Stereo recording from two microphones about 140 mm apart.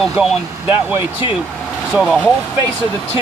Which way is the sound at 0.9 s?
15° right (ahead or behind).